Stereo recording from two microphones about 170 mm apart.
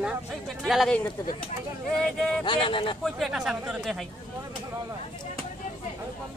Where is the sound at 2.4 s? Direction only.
30° left (ahead or behind).